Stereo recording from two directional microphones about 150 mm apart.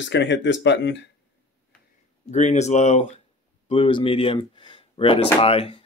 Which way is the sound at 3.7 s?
35° left (ahead or behind).